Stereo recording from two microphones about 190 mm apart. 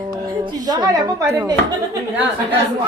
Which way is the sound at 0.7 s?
20° right (ahead or behind).